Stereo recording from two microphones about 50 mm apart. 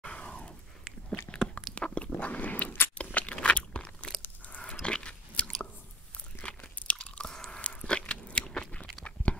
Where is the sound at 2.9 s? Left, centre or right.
Left.